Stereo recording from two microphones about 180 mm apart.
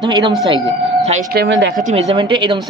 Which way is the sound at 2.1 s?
25° right (ahead or behind).